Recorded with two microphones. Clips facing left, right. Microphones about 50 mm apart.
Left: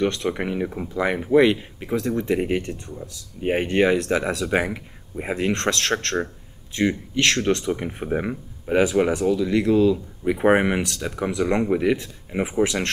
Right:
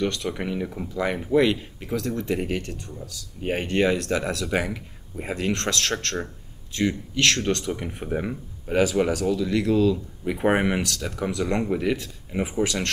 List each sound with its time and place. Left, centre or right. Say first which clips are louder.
0.0 s speech: left 3 dB; left